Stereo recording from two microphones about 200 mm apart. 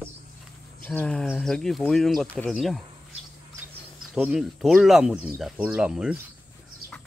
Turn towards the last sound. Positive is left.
turn(degrees=-5)  # may be behind; listen again after turning